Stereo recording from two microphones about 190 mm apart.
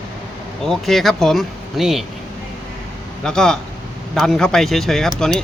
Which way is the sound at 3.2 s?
5° left (ahead or behind).